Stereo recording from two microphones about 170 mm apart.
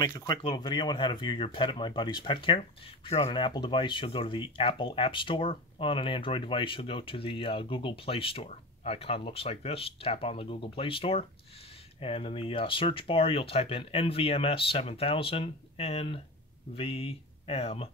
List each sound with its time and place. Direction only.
0.0 s speech: 25° left (ahead or behind)